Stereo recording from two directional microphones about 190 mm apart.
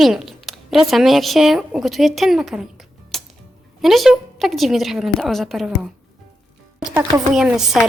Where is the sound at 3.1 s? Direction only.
Centre (ahead or behind).